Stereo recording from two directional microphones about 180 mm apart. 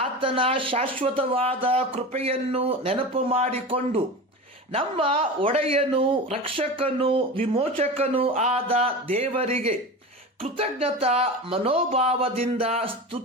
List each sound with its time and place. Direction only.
0.0 s speech: 30° right (ahead or behind)